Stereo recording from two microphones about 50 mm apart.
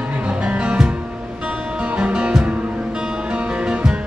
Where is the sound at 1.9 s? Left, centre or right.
Right.